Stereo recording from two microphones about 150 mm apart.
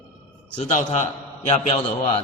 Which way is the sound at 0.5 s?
55° left (ahead or behind).